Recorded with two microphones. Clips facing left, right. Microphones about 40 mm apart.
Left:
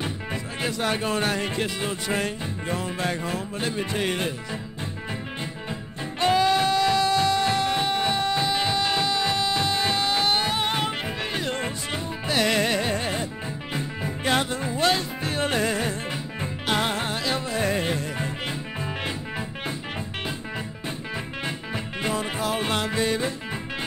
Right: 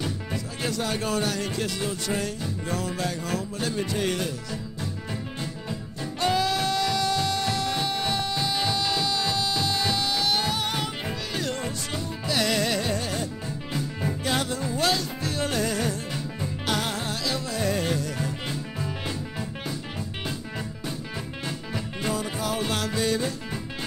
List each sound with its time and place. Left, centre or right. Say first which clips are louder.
0.0 s music: left 1 dB; left
3.3 s speech: even; left
6.1 s music: left 4 dB; left
21.5 s music: left 2 dB; left